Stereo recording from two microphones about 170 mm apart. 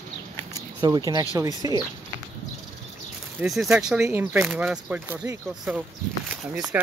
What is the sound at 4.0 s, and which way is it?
Speech, 15° right (ahead or behind).